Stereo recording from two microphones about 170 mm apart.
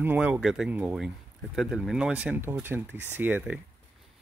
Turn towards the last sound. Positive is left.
turn(degrees=-10)  # may be behind; listen again after turning